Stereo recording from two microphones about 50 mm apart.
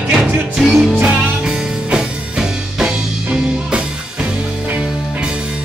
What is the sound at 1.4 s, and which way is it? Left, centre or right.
Music, centre.